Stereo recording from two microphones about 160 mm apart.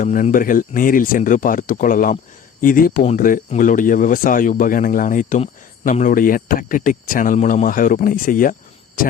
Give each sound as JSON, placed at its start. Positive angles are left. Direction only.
{"t": 0.0, "sound": "speech", "side_deg": 55}